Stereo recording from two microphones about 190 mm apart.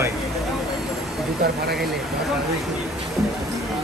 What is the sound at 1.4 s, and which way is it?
Speech, 55° right (ahead or behind).